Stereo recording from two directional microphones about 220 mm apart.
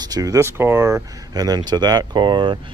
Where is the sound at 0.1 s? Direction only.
15° right (ahead or behind).